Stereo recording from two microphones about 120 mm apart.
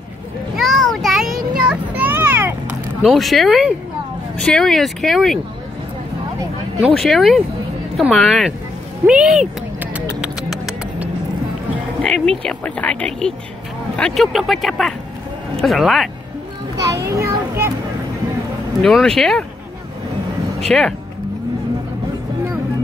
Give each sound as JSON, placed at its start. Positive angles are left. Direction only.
{"t": 0.6, "sound": "child singing", "side_deg": 0}
{"t": 2.0, "sound": "a sound", "side_deg": -15}
{"t": 3.0, "sound": "speech", "side_deg": 0}
{"t": 6.8, "sound": "speech", "side_deg": 0}
{"t": 10.2, "sound": "music", "side_deg": 0}
{"t": 12.0, "sound": "speech", "side_deg": 5}
{"t": 16.7, "sound": "children playing", "side_deg": -25}
{"t": 18.8, "sound": "speech", "side_deg": 5}
{"t": 20.6, "sound": "speech", "side_deg": 5}